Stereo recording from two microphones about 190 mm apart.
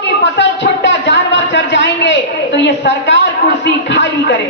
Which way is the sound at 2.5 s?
65° left (ahead or behind).